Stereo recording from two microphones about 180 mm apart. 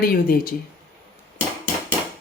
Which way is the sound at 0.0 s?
55° left (ahead or behind).